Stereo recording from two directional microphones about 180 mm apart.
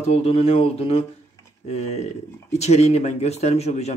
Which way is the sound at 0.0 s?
35° left (ahead or behind).